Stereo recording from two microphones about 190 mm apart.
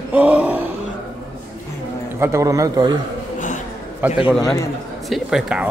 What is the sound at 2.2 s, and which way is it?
Speech, 15° right (ahead or behind).